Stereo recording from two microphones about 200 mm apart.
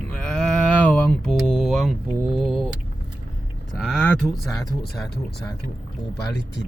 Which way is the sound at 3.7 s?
Centre (ahead or behind).